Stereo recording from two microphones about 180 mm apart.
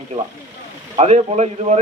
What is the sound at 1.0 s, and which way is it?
Speech, 40° right (ahead or behind).